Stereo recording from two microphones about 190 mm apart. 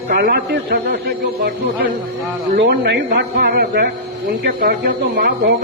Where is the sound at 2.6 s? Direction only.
65° right (ahead or behind).